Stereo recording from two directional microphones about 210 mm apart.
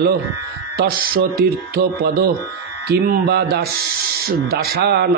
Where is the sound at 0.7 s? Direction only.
45° right (ahead or behind).